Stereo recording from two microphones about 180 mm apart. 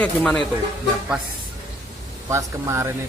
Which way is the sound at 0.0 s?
5° left (ahead or behind).